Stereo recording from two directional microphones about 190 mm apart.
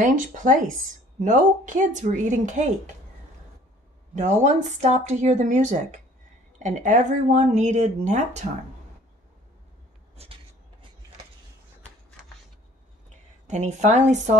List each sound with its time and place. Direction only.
0.0 s speech: 45° right (ahead or behind)
4.1 s speech: 40° right (ahead or behind)
10.1 s a sound: 30° right (ahead or behind)
13.5 s speech: 40° right (ahead or behind)